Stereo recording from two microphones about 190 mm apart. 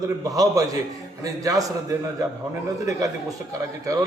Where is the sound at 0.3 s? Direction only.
20° right (ahead or behind).